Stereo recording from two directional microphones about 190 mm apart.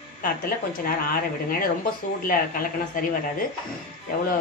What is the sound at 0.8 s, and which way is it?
Speech, 50° left (ahead or behind).